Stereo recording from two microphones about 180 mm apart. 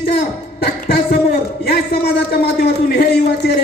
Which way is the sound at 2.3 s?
65° left (ahead or behind).